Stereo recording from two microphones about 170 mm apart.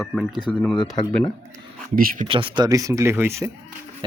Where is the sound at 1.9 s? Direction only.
55° right (ahead or behind).